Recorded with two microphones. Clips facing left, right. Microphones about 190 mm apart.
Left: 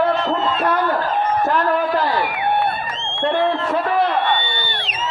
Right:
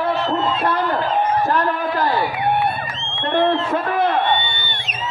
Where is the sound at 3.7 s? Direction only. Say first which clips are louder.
Left 1 dB; 50° right (ahead or behind).